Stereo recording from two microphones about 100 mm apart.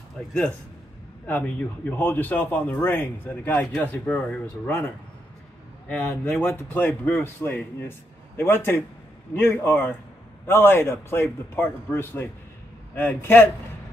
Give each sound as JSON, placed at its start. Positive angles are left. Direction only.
{"t": 0.2, "sound": "speech", "side_deg": 10}
{"t": 5.9, "sound": "speech", "side_deg": 15}
{"t": 8.4, "sound": "speech", "side_deg": 20}